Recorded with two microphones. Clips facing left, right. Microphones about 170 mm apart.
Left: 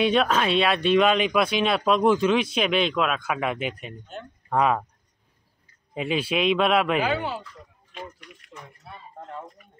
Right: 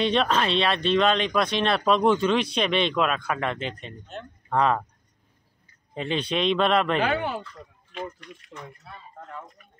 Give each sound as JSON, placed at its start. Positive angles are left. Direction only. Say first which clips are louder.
{"t": 0.0, "sound": "speech", "louder": "left 2 dB", "side_deg": 5}
{"t": 5.9, "sound": "speech", "louder": "left 1 dB", "side_deg": 5}
{"t": 7.1, "sound": "speech", "louder": "even", "side_deg": -55}
{"t": 8.8, "sound": "a sound", "louder": "left 2 dB", "side_deg": 25}